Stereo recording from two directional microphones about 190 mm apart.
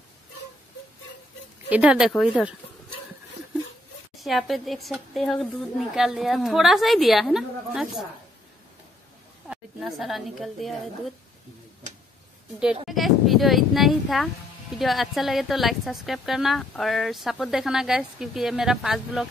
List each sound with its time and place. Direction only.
1.7 s speech: 5° right (ahead or behind)
4.2 s speech: centre (ahead or behind)
9.5 s speech: centre (ahead or behind)
12.8 s speech: centre (ahead or behind)